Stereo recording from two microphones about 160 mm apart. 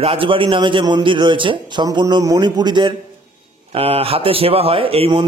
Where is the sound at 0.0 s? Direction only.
35° right (ahead or behind).